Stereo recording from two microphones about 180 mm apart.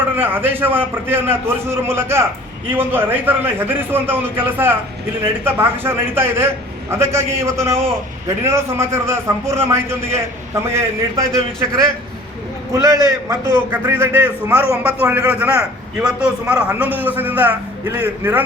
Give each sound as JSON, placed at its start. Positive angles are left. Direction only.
{"t": 0.0, "sound": "a man's voice", "side_deg": -10}
{"t": 12.7, "sound": "a man's voice", "side_deg": -20}